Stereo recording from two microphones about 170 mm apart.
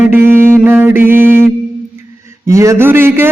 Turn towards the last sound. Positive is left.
turn(degrees=-15)  # may be behind; listen again after turning